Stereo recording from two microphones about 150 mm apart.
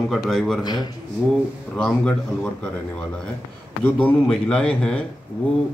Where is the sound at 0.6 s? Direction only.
30° left (ahead or behind).